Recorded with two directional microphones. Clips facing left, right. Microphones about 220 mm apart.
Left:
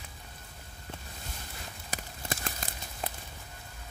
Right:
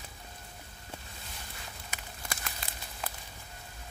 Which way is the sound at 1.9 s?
35° left (ahead or behind).